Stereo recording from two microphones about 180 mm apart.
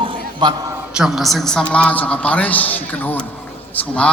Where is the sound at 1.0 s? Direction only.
Centre (ahead or behind).